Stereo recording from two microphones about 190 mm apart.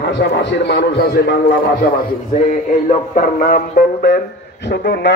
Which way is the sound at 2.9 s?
45° left (ahead or behind).